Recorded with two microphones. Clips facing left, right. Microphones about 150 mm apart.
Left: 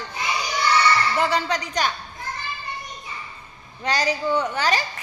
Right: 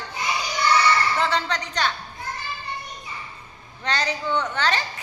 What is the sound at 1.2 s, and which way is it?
Speech, 10° left (ahead or behind).